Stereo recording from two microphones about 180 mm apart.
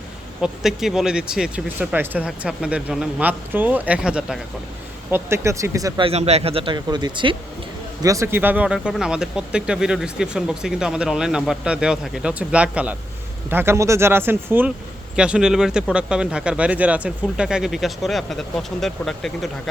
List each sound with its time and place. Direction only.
0.4 s speech: centre (ahead or behind); by 6.1 s 20° right (ahead or behind)
6.1 s speech: 35° right (ahead or behind); by 19.5 s centre (ahead or behind)